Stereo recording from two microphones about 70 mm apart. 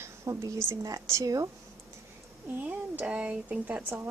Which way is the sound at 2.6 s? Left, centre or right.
Centre.